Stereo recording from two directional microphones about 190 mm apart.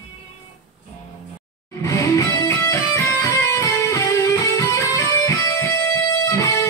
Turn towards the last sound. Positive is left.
turn(degrees=15)  # may be behind; listen again after turning